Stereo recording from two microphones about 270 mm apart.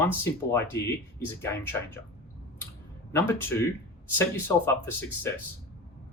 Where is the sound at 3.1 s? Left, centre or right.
Centre.